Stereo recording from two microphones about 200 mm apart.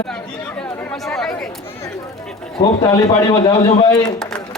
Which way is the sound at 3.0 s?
25° left (ahead or behind).